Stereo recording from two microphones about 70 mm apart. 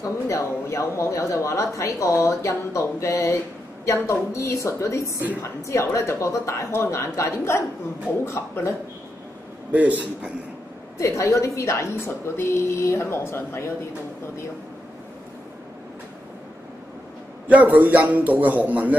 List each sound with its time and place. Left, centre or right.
0.0 s a man's voice: left
9.7 s a man's voice: right
11.0 s a woman's voice: left
17.5 s a man's voice: right